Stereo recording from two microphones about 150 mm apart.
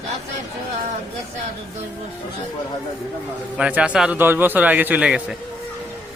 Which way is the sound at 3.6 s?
5° right (ahead or behind).